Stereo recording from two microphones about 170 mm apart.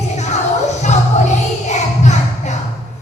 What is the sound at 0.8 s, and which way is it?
Music, 45° left (ahead or behind).